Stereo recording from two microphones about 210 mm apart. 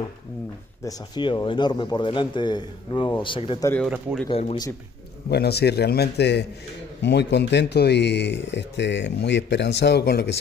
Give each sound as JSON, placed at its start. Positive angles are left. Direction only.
{"t": 0.8, "sound": "speech", "side_deg": 20}
{"t": 3.6, "sound": "speech", "side_deg": 10}
{"t": 4.3, "sound": "speech", "side_deg": 30}
{"t": 5.3, "sound": "speech", "side_deg": 50}